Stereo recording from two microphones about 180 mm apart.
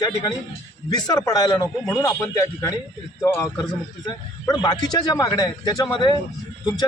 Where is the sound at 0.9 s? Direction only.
20° left (ahead or behind).